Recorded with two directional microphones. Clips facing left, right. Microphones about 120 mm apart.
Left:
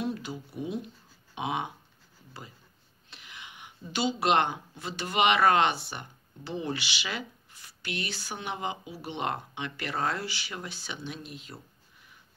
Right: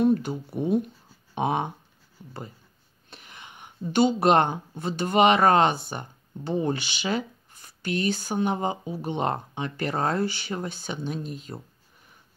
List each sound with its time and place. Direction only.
0.0 s speech: 55° right (ahead or behind)
3.1 s speech: 45° right (ahead or behind)